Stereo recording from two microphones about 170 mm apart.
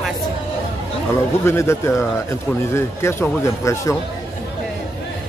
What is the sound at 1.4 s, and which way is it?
Speech, 15° left (ahead or behind).